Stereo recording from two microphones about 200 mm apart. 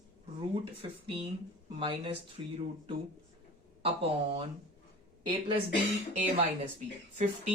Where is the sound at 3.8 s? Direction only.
30° right (ahead or behind).